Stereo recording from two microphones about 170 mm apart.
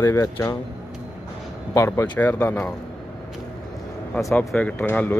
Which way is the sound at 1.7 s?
15° left (ahead or behind).